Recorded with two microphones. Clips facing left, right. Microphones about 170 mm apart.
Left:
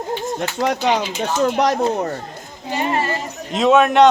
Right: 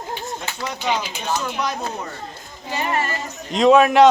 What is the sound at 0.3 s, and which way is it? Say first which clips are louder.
Speech: left 9 dB; 65° left (ahead or behind).